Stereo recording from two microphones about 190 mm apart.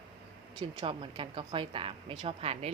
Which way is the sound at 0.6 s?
25° right (ahead or behind).